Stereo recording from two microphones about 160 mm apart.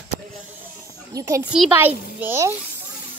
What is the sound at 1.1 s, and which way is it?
A child's voice, 20° right (ahead or behind).